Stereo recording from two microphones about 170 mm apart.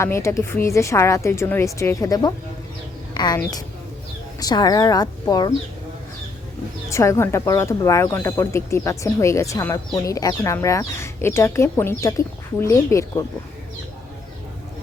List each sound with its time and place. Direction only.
0.0 s a woman's voice: 15° left (ahead or behind)
6.9 s speech: 15° left (ahead or behind)